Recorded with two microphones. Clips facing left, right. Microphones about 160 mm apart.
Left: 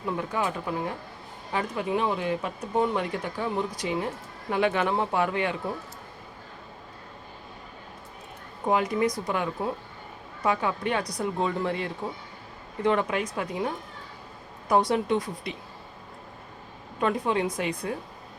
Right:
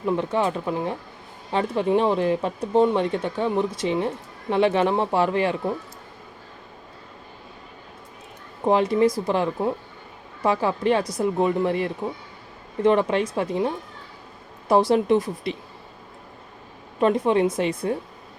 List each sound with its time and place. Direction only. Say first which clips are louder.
0.0 s speech: right 6 dB; 25° right (ahead or behind)
8.6 s speech: right 6 dB; 30° right (ahead or behind)
11.2 s speech: right 6 dB; 20° right (ahead or behind)
17.0 s speech: right 6 dB; 25° right (ahead or behind)